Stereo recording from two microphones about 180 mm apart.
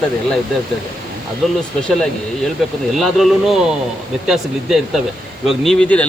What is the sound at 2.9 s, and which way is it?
A man's voice, centre (ahead or behind).